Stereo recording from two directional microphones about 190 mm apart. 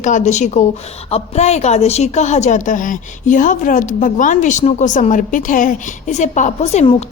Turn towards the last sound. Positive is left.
turn(degrees=35)  # may be behind; listen again after turning